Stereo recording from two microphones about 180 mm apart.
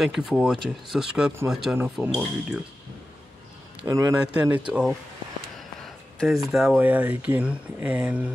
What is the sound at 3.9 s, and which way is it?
A man's voice, 20° right (ahead or behind).